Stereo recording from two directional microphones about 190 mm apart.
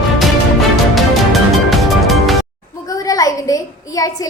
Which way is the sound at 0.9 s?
Centre (ahead or behind).